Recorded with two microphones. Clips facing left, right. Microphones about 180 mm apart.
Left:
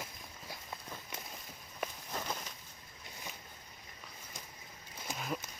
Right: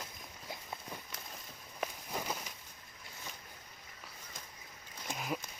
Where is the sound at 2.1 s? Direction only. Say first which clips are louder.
Right 1 dB; 10° right (ahead or behind).